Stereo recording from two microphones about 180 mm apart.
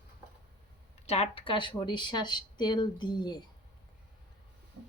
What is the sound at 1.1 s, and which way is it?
Speech, 35° left (ahead or behind).